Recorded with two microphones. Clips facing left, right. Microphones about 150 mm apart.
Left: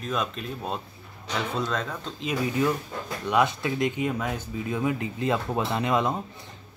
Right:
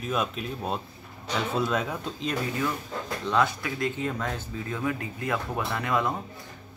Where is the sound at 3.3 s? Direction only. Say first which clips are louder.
Left 2 dB; 20° left (ahead or behind).